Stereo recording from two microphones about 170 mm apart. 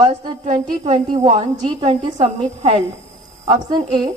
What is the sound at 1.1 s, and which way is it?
A woman's voice, 30° right (ahead or behind).